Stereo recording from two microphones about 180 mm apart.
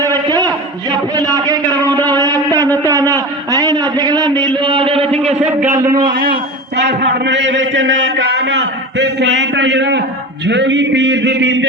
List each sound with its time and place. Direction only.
0.0 s a sound: 20° right (ahead or behind)
5.4 s a man's voice: 10° right (ahead or behind)
6.1 s a man's voice: 55° right (ahead or behind); by 11.6 s 75° right (ahead or behind)